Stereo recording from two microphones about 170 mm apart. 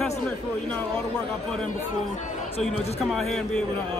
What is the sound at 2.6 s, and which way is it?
Speech, centre (ahead or behind).